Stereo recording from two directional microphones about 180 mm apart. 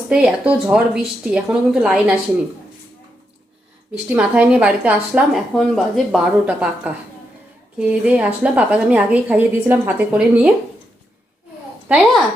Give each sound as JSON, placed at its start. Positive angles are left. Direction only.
{"t": 0.1, "sound": "a woman's voice", "side_deg": -5}
{"t": 4.1, "sound": "a woman's voice", "side_deg": -5}
{"t": 11.9, "sound": "a woman's voice", "side_deg": 0}